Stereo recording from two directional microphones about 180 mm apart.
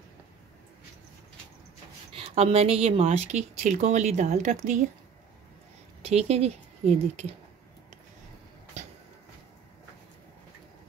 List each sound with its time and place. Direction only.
2.1 s speech: 35° right (ahead or behind)
6.0 s speech: 35° right (ahead or behind)